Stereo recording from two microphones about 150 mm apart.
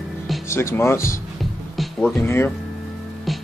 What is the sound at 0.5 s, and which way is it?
Speech, 15° left (ahead or behind).